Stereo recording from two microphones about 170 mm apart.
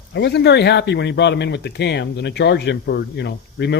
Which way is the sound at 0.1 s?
80° left.